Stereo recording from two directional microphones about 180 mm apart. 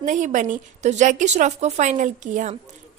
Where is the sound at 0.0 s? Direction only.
45° right (ahead or behind).